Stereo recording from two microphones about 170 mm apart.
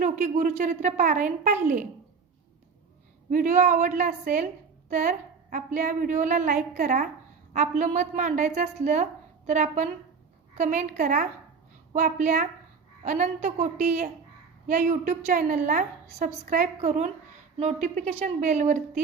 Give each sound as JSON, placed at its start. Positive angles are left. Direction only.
{"t": 0.0, "sound": "a woman's voice", "side_deg": -45}
{"t": 3.2, "sound": "a woman's voice", "side_deg": -50}
{"t": 14.7, "sound": "a woman's voice", "side_deg": -45}